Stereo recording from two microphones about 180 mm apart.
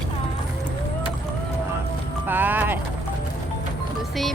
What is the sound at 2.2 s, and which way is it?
Speech, 10° right (ahead or behind).